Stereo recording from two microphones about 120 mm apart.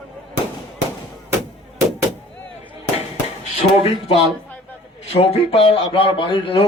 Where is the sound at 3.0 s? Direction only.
60° left (ahead or behind).